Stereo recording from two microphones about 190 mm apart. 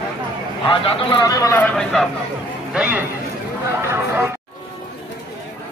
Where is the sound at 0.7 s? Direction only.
25° left (ahead or behind).